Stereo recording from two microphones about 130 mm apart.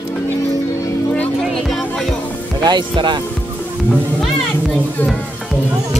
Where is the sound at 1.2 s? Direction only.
Centre (ahead or behind).